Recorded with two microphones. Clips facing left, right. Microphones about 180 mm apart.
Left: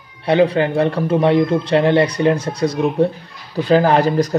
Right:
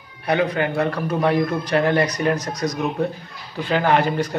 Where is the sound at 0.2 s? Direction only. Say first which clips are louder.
Left 6 dB; 30° left (ahead or behind).